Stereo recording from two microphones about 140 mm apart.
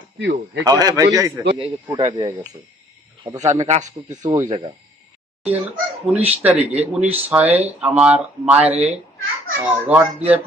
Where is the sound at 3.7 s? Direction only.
55° right (ahead or behind).